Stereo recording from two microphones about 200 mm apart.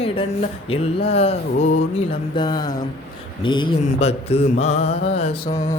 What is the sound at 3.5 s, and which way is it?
Mantra, 25° left (ahead or behind).